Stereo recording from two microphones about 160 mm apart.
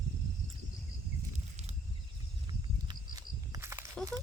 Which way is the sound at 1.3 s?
45° right (ahead or behind).